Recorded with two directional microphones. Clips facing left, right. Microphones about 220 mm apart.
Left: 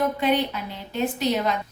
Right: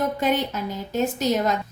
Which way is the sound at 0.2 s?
45° right (ahead or behind).